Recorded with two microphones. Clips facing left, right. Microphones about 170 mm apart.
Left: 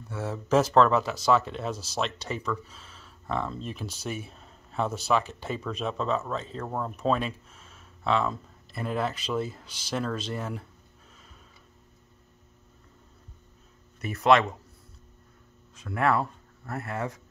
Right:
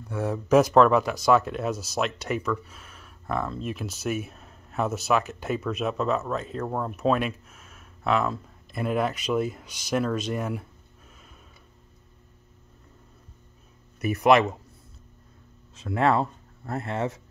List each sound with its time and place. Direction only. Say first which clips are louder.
0.1 s speech: right 4 dB; 15° right (ahead or behind)
3.5 s speech: right 4 dB; 5° right (ahead or behind)
4.3 s a sound: right 2 dB; 5° right (ahead or behind)
5.4 s speech: right 4 dB; 10° right (ahead or behind)
13.9 s speech: right 2 dB; 20° right (ahead or behind)
15.7 s speech: right 3 dB; 25° right (ahead or behind)